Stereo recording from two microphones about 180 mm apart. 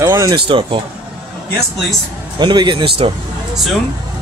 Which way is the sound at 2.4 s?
25° right (ahead or behind).